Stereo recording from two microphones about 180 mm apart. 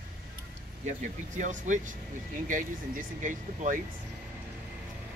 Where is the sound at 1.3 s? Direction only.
45° right (ahead or behind).